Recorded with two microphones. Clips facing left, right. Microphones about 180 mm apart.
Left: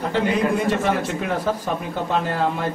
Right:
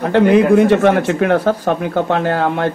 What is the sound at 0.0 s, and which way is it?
Speech, 65° right (ahead or behind).